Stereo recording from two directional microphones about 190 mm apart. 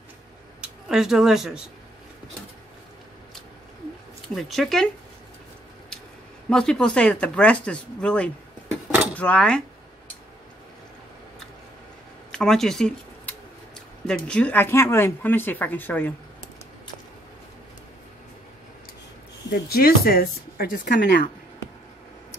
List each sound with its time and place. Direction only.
0.6 s speech: 5° right (ahead or behind)
4.4 s speech: centre (ahead or behind)
6.5 s speech: 5° left (ahead or behind)
12.3 s speech: 5° left (ahead or behind)
19.5 s speech: 55° left (ahead or behind)